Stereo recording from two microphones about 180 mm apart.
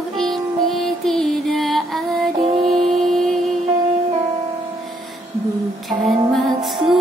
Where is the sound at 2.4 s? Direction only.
30° right (ahead or behind).